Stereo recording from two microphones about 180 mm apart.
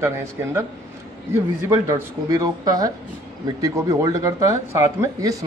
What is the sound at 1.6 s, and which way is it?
Speech, 15° right (ahead or behind).